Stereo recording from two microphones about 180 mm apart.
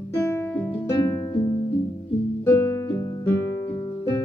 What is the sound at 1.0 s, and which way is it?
Music, 15° left (ahead or behind).